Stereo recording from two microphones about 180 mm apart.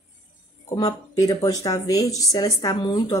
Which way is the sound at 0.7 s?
20° left (ahead or behind).